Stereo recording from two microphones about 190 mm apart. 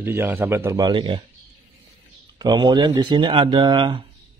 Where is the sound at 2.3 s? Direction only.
20° right (ahead or behind).